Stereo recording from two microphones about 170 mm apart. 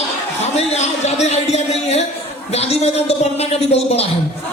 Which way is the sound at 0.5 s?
40° left (ahead or behind).